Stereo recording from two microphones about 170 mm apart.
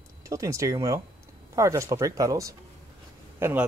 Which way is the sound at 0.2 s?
20° right (ahead or behind).